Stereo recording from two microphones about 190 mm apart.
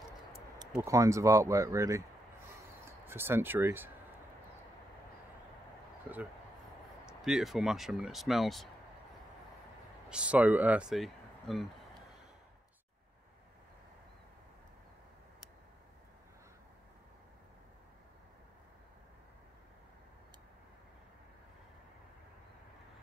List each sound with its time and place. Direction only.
0.7 s speech: 15° right (ahead or behind)
6.1 s speech: 10° right (ahead or behind)
10.0 s speech: 5° right (ahead or behind)